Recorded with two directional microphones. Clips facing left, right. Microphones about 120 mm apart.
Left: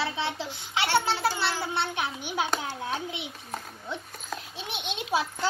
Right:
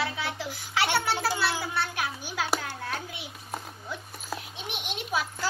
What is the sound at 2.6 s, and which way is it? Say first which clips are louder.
Hands: left 3 dB; 15° left (ahead or behind).